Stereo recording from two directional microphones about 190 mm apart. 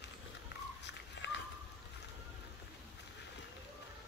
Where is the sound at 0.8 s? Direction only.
70° left (ahead or behind).